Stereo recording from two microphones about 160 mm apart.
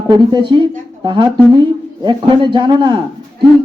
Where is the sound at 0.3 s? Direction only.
30° right (ahead or behind).